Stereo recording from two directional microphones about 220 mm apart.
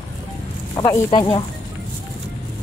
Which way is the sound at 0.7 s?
15° left (ahead or behind).